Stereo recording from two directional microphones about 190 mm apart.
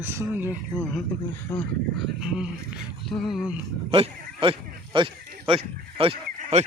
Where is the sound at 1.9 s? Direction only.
5° right (ahead or behind).